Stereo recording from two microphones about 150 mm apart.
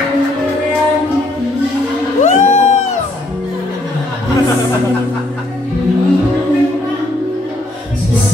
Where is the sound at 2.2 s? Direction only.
50° left (ahead or behind).